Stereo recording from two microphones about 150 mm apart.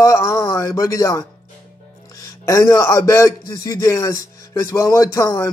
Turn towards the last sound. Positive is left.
turn(degrees=20)  # may be behind; listen again after turning